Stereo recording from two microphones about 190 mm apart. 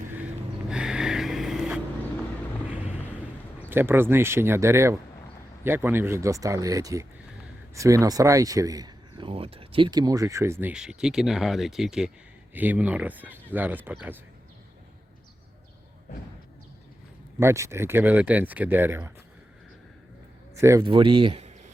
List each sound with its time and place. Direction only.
0.7 s a sound: 5° right (ahead or behind)
3.7 s speech: 10° right (ahead or behind)
17.4 s speech: 15° right (ahead or behind)
20.6 s speech: 15° right (ahead or behind)
20.8 s speech: 25° right (ahead or behind)